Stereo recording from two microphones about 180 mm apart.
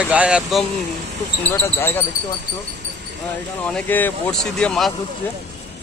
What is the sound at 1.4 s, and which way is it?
Speech, 15° left (ahead or behind).